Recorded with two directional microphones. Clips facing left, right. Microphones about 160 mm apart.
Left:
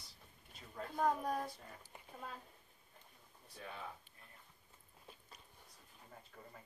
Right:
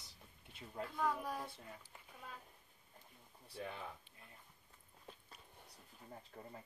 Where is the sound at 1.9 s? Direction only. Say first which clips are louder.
Left 3 dB; 20° left (ahead or behind).